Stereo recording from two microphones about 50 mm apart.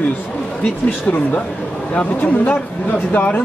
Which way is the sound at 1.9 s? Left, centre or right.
Left.